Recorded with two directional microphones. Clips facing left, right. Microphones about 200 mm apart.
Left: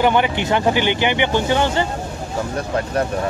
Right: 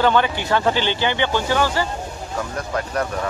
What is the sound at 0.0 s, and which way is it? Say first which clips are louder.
Speech: left 1 dB; 15° left (ahead or behind).